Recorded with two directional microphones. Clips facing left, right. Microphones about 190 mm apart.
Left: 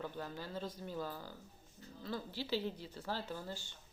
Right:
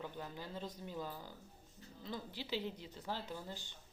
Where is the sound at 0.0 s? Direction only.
20° right (ahead or behind).